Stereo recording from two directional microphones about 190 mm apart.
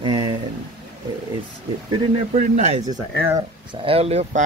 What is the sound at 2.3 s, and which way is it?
Speech, 40° right (ahead or behind).